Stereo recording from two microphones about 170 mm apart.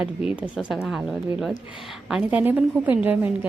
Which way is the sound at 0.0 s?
5° right (ahead or behind).